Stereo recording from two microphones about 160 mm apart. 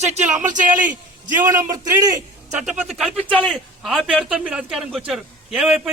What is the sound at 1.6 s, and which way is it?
Speech, 25° right (ahead or behind).